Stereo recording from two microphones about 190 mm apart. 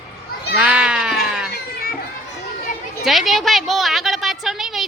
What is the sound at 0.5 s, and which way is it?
Goat, 5° right (ahead or behind).